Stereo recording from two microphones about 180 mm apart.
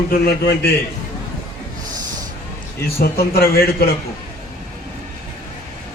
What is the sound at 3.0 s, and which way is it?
Speech, 55° left (ahead or behind).